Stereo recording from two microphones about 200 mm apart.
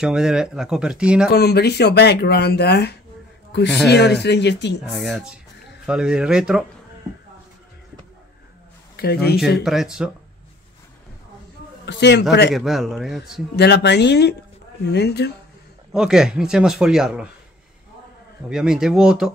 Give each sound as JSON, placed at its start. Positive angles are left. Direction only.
{"t": 0.0, "sound": "a man's voice", "side_deg": -5}
{"t": 1.3, "sound": "speech", "side_deg": 55}
{"t": 4.8, "sound": "a man's voice", "side_deg": 0}
{"t": 8.9, "sound": "a man's voice", "side_deg": 50}
{"t": 9.7, "sound": "a man's voice", "side_deg": 0}
{"t": 11.8, "sound": "a man's voice", "side_deg": 60}
{"t": 12.5, "sound": "a man's voice", "side_deg": 0}
{"t": 13.6, "sound": "speech", "side_deg": 55}
{"t": 15.9, "sound": "a man's voice", "side_deg": -5}
{"t": 18.5, "sound": "a man's voice", "side_deg": -5}